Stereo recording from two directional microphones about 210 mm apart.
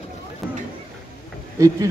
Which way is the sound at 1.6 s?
15° right (ahead or behind).